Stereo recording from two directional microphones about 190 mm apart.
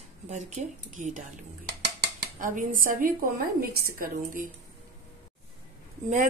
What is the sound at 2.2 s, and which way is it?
A woman's voice, 45° right (ahead or behind).